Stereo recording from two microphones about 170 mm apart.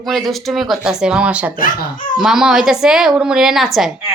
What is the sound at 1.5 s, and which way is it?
Speech, 55° left (ahead or behind).